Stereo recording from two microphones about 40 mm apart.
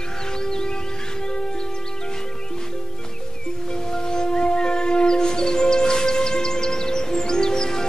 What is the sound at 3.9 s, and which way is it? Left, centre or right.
Music, centre.